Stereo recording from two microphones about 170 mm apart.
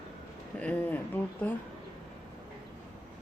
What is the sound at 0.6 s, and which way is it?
Speech, 10° left (ahead or behind).